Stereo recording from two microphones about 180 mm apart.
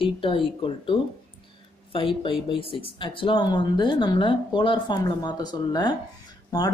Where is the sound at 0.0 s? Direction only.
30° left (ahead or behind).